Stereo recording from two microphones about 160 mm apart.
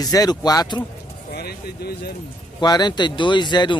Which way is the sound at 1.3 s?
80° left.